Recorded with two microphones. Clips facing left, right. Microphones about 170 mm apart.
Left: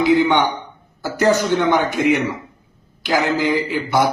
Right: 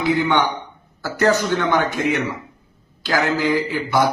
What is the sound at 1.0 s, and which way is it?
Speech, 20° left (ahead or behind).